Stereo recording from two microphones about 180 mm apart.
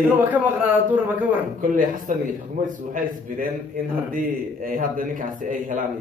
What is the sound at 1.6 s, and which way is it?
A man's voice, 50° right (ahead or behind).